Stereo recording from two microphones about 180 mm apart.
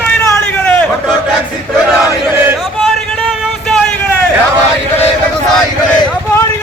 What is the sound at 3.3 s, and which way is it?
Music, centre (ahead or behind).